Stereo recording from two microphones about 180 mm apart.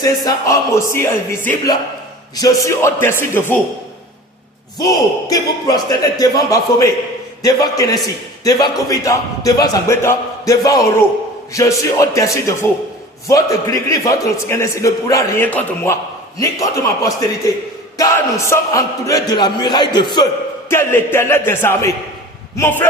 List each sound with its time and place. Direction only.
0.0 s a man's voice: 20° left (ahead or behind)
4.8 s a man's voice: 20° left (ahead or behind)
20.7 s a man's voice: 15° left (ahead or behind)